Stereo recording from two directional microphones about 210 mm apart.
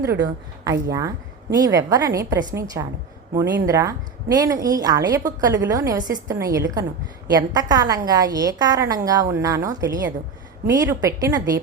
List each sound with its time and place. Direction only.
0.2 s a woman's voice: 15° right (ahead or behind)